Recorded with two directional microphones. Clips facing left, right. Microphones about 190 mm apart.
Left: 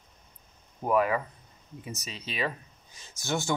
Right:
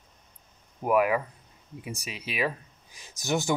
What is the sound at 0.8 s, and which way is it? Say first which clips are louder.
Speech: right 2 dB; 10° right (ahead or behind).